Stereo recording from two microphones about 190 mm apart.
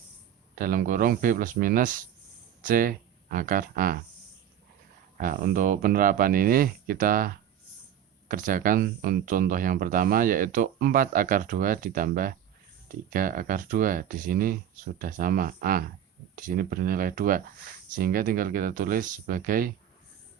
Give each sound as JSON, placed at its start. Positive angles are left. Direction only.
{"t": 0.5, "sound": "speech", "side_deg": -50}
{"t": 5.1, "sound": "speech", "side_deg": -50}